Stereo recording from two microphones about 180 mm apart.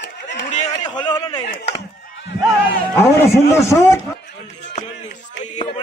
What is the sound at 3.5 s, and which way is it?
Speech, 15° left (ahead or behind).